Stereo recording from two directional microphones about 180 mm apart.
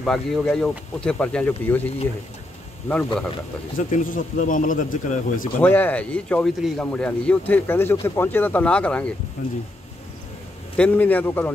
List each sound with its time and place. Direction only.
0.0 s speech: centre (ahead or behind)
3.7 s a man's voice: 50° left (ahead or behind)
5.6 s speech: 10° left (ahead or behind)
10.8 s speech: 10° left (ahead or behind)